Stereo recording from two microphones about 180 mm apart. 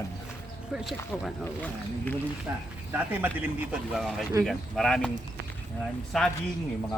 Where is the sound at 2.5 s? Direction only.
20° right (ahead or behind); by 5.1 s centre (ahead or behind).